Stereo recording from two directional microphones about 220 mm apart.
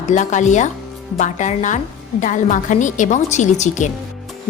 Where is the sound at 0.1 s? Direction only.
35° left (ahead or behind).